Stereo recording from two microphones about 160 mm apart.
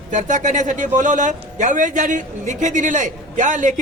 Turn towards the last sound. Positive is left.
turn(degrees=-50)  # may be behind; listen again after turning